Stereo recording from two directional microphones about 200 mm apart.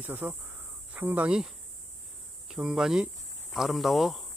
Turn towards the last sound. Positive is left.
turn(degrees=0)  # may be behind; listen again after turning